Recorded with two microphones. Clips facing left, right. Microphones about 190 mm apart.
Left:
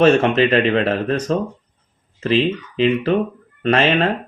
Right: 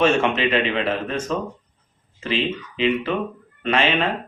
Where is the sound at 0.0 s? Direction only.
40° left (ahead or behind).